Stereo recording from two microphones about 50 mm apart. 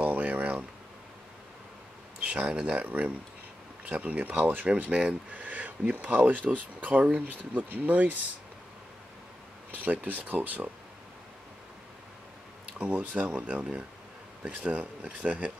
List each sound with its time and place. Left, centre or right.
0.0 s a sound: right
2.2 s speech: right
2.8 s speech: right
9.8 s speech: right
12.7 s speech: right